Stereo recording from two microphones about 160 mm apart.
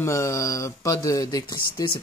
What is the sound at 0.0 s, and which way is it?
Speech, 20° left (ahead or behind).